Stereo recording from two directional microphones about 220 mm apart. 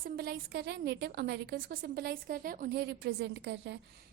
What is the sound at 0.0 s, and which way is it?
A woman's voice, 45° right (ahead or behind).